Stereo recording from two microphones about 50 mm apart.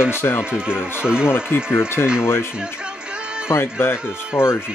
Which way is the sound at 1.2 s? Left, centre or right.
Left.